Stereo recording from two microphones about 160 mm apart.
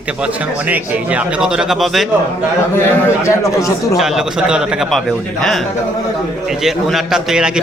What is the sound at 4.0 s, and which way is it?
A man's voice, 5° right (ahead or behind).